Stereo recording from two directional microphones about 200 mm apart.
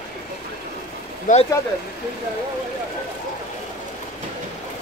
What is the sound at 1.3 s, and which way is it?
Speech, 40° left (ahead or behind).